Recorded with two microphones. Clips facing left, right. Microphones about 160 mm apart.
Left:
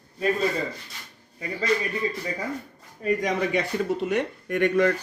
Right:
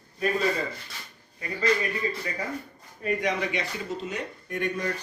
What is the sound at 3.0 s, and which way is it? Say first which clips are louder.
Speech: left 3 dB; 45° left (ahead or behind).